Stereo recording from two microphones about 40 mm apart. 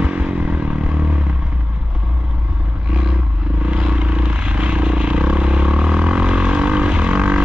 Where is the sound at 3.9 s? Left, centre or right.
Right.